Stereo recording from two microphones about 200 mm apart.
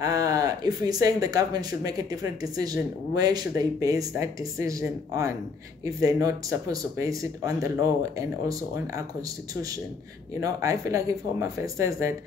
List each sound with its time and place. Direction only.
0.0 s speech: 20° right (ahead or behind)
10.4 s speech: 15° right (ahead or behind)